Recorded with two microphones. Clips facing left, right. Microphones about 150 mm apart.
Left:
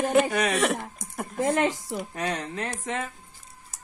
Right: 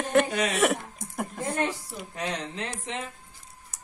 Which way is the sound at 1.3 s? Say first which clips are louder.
Left 6 dB; 90° left.